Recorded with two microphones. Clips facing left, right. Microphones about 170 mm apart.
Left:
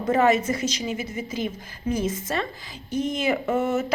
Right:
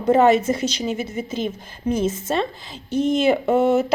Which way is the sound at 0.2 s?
30° right (ahead or behind).